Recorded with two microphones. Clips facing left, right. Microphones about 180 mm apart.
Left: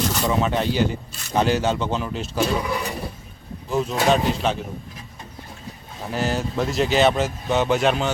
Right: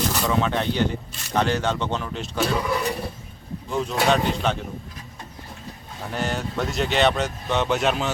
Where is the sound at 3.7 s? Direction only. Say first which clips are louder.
Left 2 dB; centre (ahead or behind).